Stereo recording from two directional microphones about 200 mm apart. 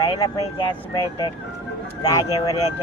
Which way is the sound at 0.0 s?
15° left (ahead or behind).